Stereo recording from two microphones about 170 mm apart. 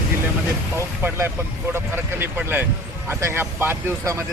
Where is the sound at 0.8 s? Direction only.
15° right (ahead or behind).